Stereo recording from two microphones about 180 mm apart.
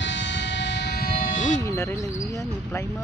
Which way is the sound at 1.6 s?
15° left (ahead or behind).